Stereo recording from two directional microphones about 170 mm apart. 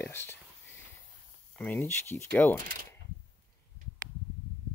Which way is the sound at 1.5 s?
10° left (ahead or behind).